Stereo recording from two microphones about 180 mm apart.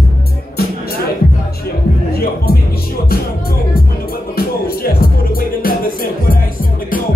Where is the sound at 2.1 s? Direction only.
60° left (ahead or behind).